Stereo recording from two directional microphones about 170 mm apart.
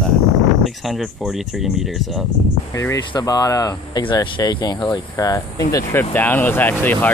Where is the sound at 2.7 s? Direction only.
20° left (ahead or behind).